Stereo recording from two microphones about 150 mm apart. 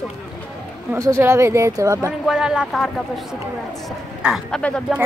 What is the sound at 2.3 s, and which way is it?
Speech, 5° right (ahead or behind).